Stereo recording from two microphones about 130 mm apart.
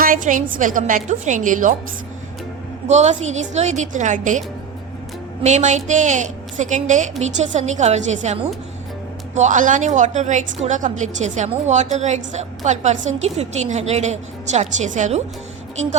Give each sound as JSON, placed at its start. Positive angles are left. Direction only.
{"t": 0.0, "sound": "a woman's voice", "side_deg": -90}
{"t": 2.8, "sound": "a woman's voice", "side_deg": -60}
{"t": 5.4, "sound": "a woman's voice", "side_deg": -65}